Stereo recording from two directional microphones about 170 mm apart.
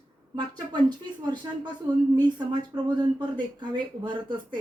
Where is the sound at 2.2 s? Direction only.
25° right (ahead or behind).